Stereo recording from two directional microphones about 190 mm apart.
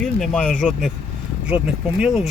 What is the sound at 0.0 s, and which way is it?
Speech, 5° left (ahead or behind).